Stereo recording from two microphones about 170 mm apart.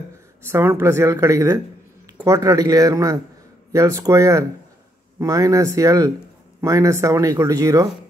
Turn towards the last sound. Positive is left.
turn(degrees=-20)  # may be behind; listen again after turning